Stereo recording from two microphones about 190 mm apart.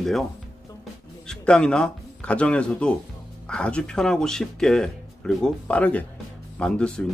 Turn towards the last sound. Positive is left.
turn(degrees=5)  # may be behind; listen again after turning